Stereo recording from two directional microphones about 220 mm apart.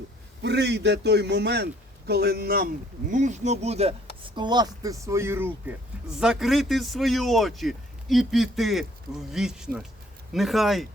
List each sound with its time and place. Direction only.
0.4 s a man's voice: 50° right (ahead or behind)
3.1 s speech: 35° right (ahead or behind); by 10.8 s centre (ahead or behind)